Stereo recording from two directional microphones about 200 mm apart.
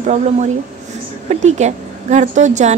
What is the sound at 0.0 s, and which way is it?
A woman's voice, 35° right (ahead or behind).